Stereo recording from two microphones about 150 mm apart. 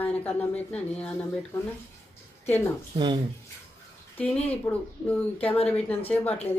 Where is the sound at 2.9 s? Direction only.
30° right (ahead or behind).